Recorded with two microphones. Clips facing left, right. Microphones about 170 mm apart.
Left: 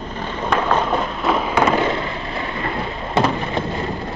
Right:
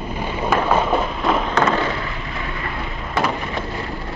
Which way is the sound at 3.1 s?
25° left (ahead or behind).